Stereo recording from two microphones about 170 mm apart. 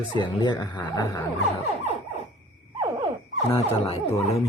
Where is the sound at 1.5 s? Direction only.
40° left (ahead or behind).